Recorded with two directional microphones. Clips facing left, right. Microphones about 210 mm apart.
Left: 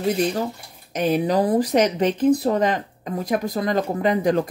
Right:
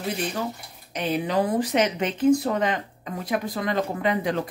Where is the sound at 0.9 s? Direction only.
45° left (ahead or behind).